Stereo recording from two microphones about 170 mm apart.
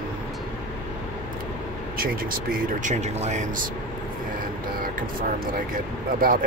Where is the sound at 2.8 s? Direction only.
45° right (ahead or behind).